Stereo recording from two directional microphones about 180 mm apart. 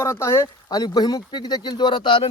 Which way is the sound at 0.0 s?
15° left (ahead or behind).